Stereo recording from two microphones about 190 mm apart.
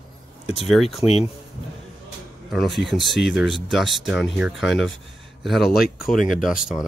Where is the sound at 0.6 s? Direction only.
Centre (ahead or behind).